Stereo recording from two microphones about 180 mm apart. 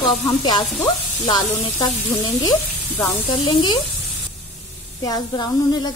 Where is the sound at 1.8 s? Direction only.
20° left (ahead or behind).